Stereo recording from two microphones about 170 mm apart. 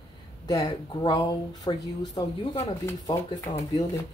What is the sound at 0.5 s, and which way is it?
Speech, 20° left (ahead or behind).